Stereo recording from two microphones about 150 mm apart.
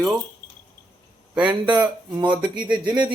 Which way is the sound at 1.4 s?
30° right (ahead or behind).